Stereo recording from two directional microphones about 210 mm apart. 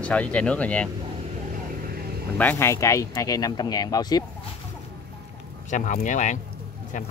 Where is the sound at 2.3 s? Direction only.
10° left (ahead or behind).